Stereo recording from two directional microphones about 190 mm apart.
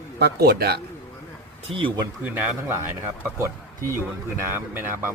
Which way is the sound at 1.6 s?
25° right (ahead or behind).